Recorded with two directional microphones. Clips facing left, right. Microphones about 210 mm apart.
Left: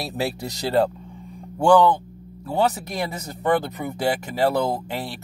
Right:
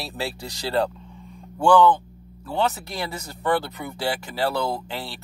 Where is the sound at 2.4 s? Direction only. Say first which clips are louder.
Left 3 dB; 10° left (ahead or behind).